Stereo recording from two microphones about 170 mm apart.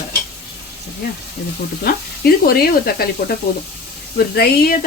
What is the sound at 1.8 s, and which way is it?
Speech, 65° left (ahead or behind).